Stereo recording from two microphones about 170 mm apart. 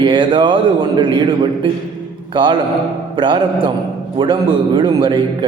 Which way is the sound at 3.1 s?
25° right (ahead or behind).